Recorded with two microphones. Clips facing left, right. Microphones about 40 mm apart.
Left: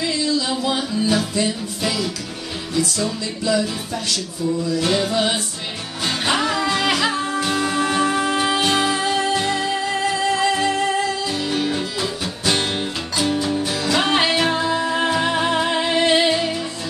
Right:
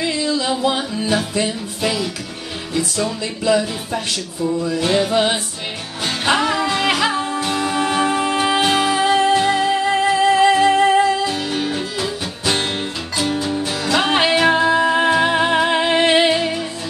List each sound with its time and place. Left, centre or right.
0.0 s music: right
11.7 s music: centre; by 16.5 s right